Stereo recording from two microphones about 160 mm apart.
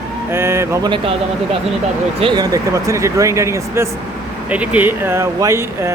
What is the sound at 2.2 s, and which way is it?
A man's voice, 25° right (ahead or behind).